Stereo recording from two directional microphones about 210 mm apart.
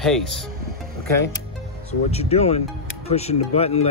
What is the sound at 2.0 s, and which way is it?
Speech, 30° left (ahead or behind).